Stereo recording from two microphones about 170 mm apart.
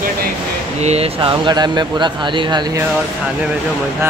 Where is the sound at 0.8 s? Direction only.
40° right (ahead or behind).